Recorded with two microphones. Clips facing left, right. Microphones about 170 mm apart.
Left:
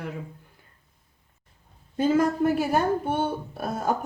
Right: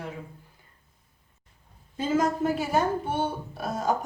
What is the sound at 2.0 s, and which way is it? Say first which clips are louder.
A woman's voice: left 4 dB; 60° left (ahead or behind).